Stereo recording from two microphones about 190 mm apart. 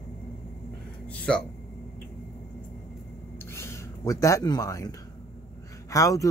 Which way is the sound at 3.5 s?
15° left (ahead or behind).